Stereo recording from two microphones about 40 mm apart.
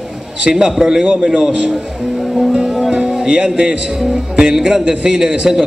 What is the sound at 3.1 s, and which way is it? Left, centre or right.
Music, centre.